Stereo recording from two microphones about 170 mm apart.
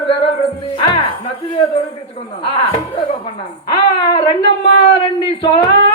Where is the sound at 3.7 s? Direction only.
25° left (ahead or behind).